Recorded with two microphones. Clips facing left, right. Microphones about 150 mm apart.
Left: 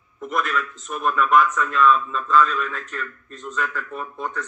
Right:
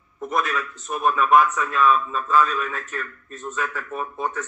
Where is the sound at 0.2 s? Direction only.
20° right (ahead or behind).